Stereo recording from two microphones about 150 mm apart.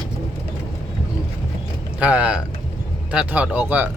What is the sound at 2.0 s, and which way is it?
Speech, 10° right (ahead or behind).